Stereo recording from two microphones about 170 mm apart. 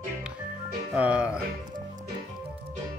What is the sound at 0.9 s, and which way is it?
Speech, 5° right (ahead or behind).